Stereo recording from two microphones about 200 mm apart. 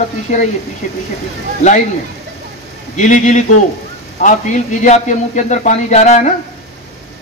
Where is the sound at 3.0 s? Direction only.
35° left (ahead or behind).